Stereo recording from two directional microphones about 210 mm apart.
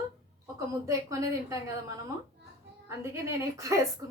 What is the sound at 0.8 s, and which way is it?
A woman's voice, 15° right (ahead or behind).